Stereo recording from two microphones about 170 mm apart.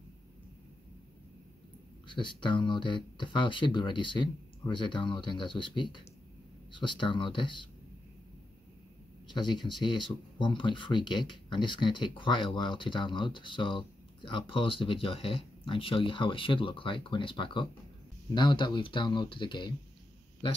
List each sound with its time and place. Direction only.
2.0 s speech: 30° left (ahead or behind)
9.3 s speech: 25° left (ahead or behind)